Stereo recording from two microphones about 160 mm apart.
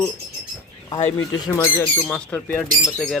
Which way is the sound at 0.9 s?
30° left (ahead or behind).